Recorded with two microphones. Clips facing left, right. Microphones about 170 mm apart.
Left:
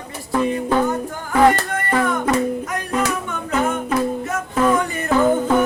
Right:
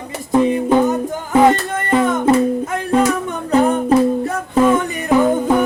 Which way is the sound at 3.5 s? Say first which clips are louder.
Right 7 dB; 35° right (ahead or behind).